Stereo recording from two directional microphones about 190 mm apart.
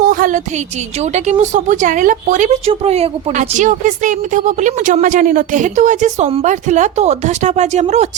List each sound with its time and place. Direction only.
0.1 s a woman's voice: 45° right (ahead or behind)